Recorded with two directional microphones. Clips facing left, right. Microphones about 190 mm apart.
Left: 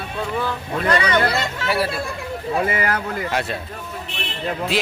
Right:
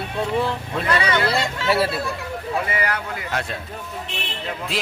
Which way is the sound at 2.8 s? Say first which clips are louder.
Left 3 dB; 45° left (ahead or behind).